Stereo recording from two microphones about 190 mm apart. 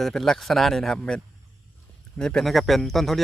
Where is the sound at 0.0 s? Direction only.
Centre (ahead or behind).